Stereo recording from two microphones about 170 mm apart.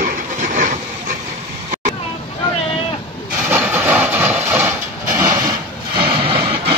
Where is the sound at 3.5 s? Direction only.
15° right (ahead or behind).